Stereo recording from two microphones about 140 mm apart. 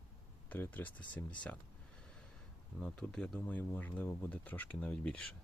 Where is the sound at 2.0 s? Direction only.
5° left (ahead or behind).